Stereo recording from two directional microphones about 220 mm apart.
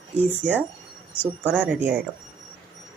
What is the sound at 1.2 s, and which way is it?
Speech, 10° right (ahead or behind).